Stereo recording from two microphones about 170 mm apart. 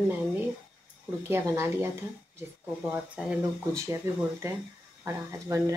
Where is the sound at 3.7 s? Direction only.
15° right (ahead or behind).